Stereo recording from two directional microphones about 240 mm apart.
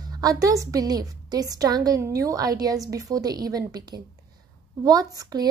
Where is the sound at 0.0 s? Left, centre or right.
Centre.